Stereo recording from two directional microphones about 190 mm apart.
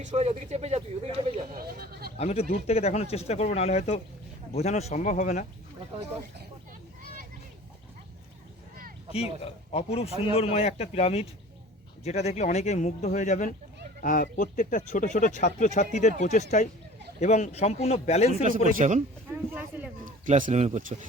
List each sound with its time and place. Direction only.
0.0 s speech: 35° right (ahead or behind)
1.5 s speech: 55° right (ahead or behind)
2.1 s speech: 35° left (ahead or behind)
9.4 s speech: 30° left (ahead or behind)
18.8 s speech: 40° right (ahead or behind)
19.3 s speech: 10° right (ahead or behind)
20.1 s speech: 40° right (ahead or behind)